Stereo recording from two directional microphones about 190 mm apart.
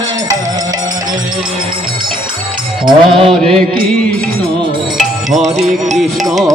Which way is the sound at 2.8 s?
25° right (ahead or behind).